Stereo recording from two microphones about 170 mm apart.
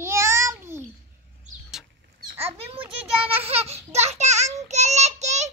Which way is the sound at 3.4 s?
35° right (ahead or behind).